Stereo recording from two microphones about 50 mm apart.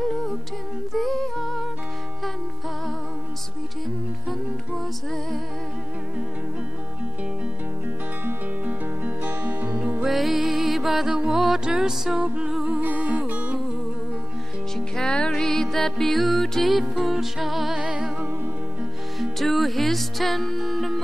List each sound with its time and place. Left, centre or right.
0.0 s humming: centre
9.2 s music: right
10.0 s music: centre
12.2 s music: centre
12.6 s music: right
15.0 s music: centre
19.3 s music: centre